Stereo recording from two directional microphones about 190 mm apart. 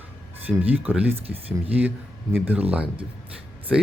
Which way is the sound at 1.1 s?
30° right (ahead or behind).